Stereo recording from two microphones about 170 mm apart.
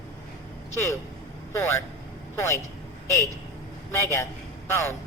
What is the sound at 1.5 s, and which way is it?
Speech, 15° left (ahead or behind).